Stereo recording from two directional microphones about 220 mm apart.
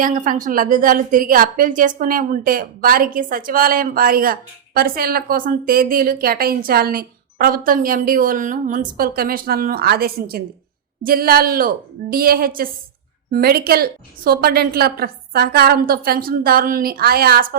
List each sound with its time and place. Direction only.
0.0 s a woman's voice: 35° right (ahead or behind)